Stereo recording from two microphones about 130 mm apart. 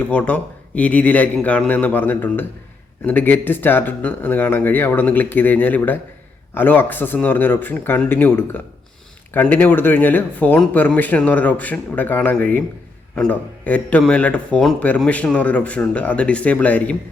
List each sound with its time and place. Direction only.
0.1 s speech: 10° left (ahead or behind)